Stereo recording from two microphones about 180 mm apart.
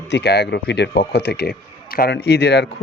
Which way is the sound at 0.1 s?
70° left (ahead or behind).